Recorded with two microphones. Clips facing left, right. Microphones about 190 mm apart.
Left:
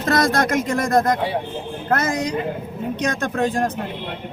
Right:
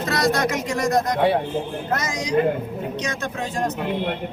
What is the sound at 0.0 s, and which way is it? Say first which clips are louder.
Speech: left 2 dB; 50° left (ahead or behind).